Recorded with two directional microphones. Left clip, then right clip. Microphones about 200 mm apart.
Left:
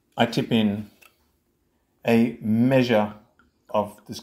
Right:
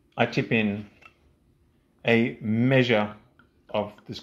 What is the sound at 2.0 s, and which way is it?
Speech, 10° right (ahead or behind).